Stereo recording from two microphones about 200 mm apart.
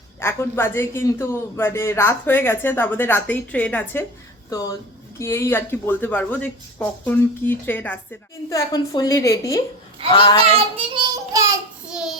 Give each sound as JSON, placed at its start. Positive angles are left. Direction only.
{"t": 0.2, "sound": "a man's voice", "side_deg": 10}
{"t": 10.4, "sound": "a child's voice", "side_deg": -30}
{"t": 11.9, "sound": "a child's voice", "side_deg": -5}